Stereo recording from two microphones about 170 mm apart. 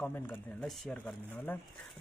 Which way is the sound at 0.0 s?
10° left (ahead or behind).